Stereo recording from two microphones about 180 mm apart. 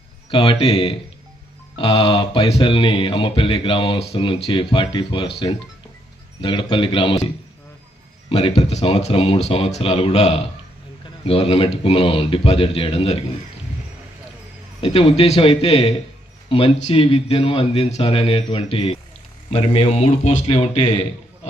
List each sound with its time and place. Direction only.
0.3 s speech: 30° left (ahead or behind)
1.7 s mantra: 30° left (ahead or behind)
8.3 s speech: 35° left (ahead or behind)
14.8 s speech: 30° left (ahead or behind)